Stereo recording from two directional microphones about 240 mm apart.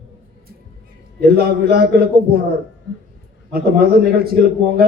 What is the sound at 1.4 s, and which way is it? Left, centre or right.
Speech, right.